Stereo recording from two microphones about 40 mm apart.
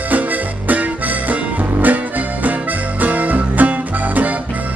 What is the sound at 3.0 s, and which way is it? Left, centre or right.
Music, right.